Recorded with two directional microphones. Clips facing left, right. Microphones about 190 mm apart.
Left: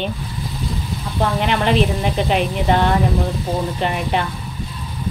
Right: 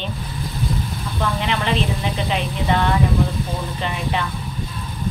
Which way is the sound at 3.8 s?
50° left (ahead or behind).